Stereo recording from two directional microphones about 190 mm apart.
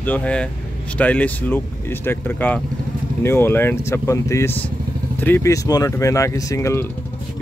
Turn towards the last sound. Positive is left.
turn(degrees=15)  # may be behind; listen again after turning